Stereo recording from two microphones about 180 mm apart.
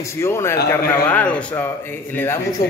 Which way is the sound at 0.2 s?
15° left (ahead or behind).